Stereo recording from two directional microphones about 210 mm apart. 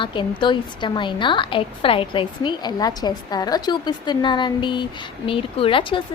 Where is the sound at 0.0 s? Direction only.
20° left (ahead or behind).